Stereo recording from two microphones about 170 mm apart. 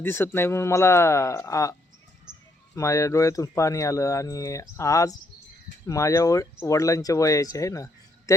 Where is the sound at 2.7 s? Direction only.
15° left (ahead or behind).